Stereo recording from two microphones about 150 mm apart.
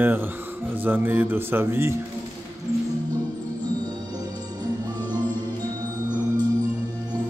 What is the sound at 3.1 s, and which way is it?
Music, 25° right (ahead or behind).